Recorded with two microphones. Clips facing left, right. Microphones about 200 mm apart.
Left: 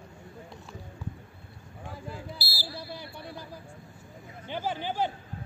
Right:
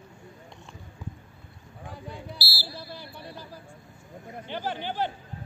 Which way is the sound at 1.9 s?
Centre (ahead or behind).